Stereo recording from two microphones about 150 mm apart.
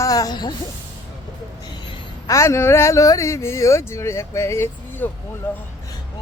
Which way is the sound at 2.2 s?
20° left (ahead or behind).